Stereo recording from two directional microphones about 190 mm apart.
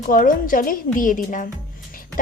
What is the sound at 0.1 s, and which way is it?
A woman's voice, 45° left (ahead or behind).